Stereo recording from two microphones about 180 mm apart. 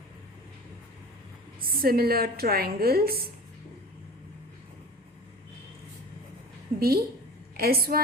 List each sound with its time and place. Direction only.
1.8 s a woman's voice: 60° right (ahead or behind)
6.7 s a woman's voice: 60° right (ahead or behind)